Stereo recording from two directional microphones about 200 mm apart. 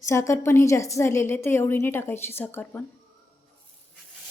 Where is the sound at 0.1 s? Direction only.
15° left (ahead or behind).